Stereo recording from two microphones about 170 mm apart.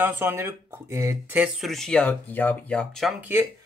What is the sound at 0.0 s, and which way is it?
Speech, 10° right (ahead or behind).